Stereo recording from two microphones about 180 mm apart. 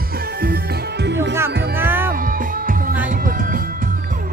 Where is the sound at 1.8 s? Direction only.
10° right (ahead or behind).